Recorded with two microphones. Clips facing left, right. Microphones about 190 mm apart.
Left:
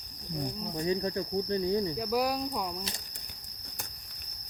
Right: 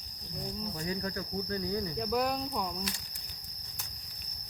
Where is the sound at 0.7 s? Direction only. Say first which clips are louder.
Left 9 dB; 25° left (ahead or behind).